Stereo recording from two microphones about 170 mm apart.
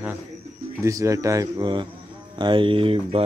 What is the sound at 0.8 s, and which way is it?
Speech, 20° right (ahead or behind).